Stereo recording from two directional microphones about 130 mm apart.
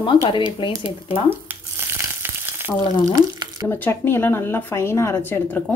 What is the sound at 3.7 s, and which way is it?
Speech, 15° left (ahead or behind).